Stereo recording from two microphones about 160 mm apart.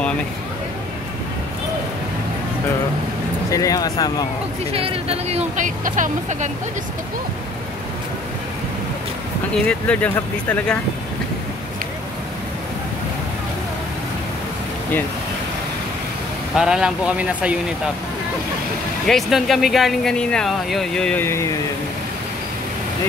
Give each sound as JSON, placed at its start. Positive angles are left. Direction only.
{"t": 3.5, "sound": "speech", "side_deg": 20}
{"t": 4.7, "sound": "speech", "side_deg": -35}
{"t": 9.5, "sound": "speech", "side_deg": 5}
{"t": 16.5, "sound": "speech", "side_deg": -5}
{"t": 19.0, "sound": "speech", "side_deg": 0}